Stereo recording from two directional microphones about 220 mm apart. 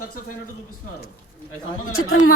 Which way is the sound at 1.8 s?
70° left (ahead or behind).